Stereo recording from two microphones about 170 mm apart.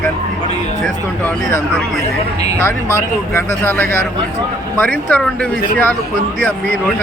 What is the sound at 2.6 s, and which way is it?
Speech, 15° left (ahead or behind).